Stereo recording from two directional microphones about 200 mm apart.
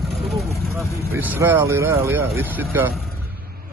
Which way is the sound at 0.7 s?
10° right (ahead or behind).